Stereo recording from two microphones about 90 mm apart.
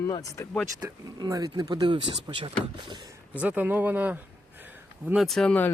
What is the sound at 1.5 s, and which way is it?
Speech, 60° right (ahead or behind).